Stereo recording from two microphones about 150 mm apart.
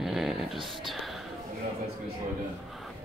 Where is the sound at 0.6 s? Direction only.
35° right (ahead or behind).